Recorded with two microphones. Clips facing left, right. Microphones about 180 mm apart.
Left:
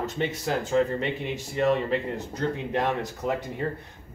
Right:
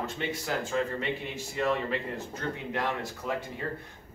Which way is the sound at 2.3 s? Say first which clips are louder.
Left 8 dB; 20° left (ahead or behind).